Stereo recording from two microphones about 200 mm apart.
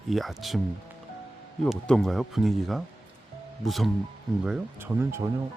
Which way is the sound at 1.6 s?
Centre (ahead or behind).